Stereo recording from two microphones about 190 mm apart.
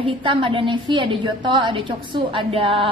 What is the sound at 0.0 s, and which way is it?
A woman's voice, 25° right (ahead or behind).